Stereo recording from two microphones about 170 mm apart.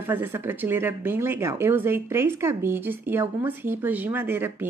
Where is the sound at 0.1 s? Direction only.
15° right (ahead or behind).